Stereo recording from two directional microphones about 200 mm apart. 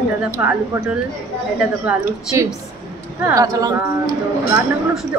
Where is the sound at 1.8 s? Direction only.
15° right (ahead or behind).